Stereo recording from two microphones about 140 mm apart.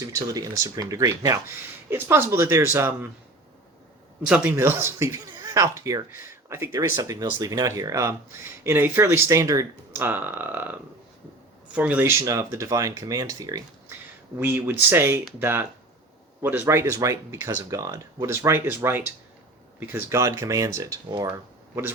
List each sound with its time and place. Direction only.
0.0 s speech: 25° right (ahead or behind)
4.3 s speech: 15° right (ahead or behind)
12.2 s speech: 20° right (ahead or behind)